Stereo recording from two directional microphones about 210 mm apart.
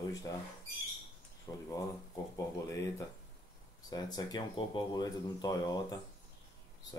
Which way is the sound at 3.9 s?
20° left (ahead or behind).